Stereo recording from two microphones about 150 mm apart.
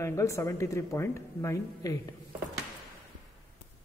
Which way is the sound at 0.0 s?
20° left (ahead or behind).